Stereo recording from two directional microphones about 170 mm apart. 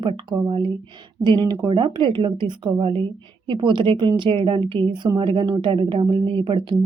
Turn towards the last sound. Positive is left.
turn(degrees=-30)  # may be behind; listen again after turning